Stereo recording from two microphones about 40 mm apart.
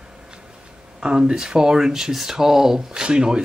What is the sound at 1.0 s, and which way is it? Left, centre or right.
Speech, centre.